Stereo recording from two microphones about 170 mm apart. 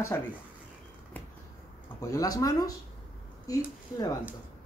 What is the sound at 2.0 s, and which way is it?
Speech, 20° left (ahead or behind).